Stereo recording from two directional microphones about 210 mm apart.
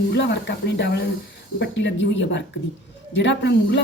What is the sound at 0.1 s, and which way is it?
A woman's voice, 55° left (ahead or behind).